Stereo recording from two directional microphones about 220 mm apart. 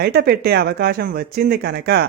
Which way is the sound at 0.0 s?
45° right (ahead or behind).